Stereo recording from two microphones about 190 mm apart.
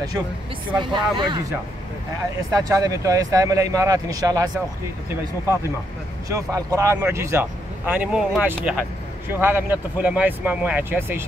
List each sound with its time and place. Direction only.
0.7 s speech: 25° right (ahead or behind)
2.5 s speech: 20° right (ahead or behind)
6.2 s speech: 15° right (ahead or behind)